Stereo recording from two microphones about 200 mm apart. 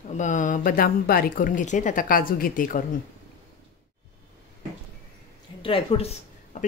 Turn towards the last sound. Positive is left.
turn(degrees=30)  # may be behind; listen again after turning